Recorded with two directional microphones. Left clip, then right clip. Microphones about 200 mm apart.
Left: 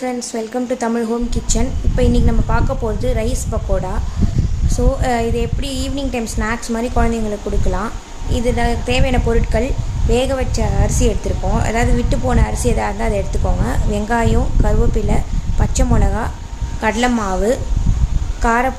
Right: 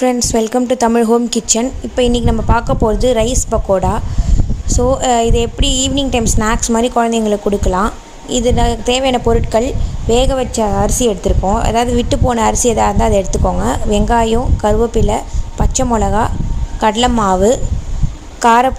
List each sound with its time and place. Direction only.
0.0 s a woman's voice: 40° right (ahead or behind)